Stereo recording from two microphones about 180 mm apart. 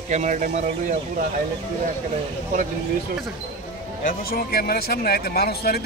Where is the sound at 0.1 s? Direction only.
45° right (ahead or behind).